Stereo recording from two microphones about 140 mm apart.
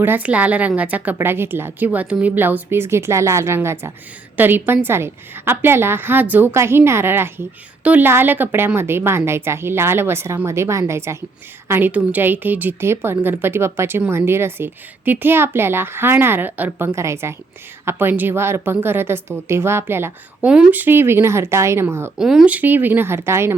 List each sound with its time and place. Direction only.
0.0 s a woman's voice: 10° right (ahead or behind)
22.2 s a woman's voice: 5° right (ahead or behind)